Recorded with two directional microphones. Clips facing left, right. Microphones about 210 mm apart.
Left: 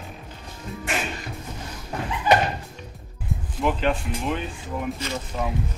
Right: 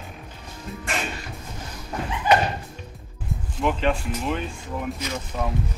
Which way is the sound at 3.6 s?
Centre (ahead or behind).